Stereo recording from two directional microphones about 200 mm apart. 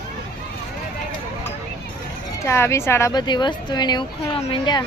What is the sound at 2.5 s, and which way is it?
A woman's voice, 15° left (ahead or behind).